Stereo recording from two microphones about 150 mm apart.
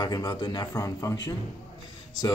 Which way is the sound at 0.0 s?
25° left (ahead or behind).